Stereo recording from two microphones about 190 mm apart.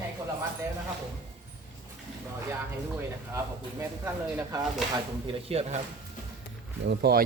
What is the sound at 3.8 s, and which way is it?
Speech, 10° right (ahead or behind).